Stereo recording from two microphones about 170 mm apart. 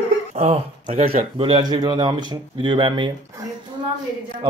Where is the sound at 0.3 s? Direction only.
40° right (ahead or behind).